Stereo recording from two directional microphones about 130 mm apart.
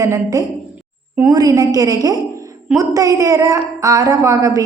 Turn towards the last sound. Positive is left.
turn(degrees=-25)  # may be behind; listen again after turning